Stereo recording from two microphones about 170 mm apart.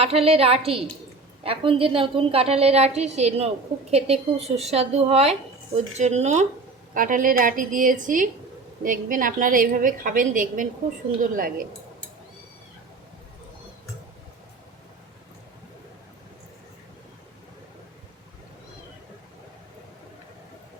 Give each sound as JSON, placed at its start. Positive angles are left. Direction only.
{"t": 0.0, "sound": "a woman's voice", "side_deg": -35}